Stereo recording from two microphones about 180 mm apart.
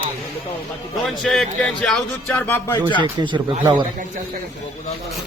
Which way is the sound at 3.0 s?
25° right (ahead or behind).